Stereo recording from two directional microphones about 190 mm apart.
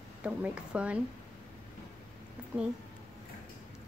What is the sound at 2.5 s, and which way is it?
Speech, 10° right (ahead or behind).